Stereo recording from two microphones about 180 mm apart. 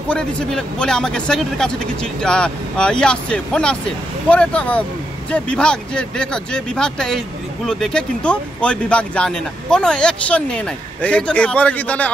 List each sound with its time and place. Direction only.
0.1 s speech: 5° left (ahead or behind)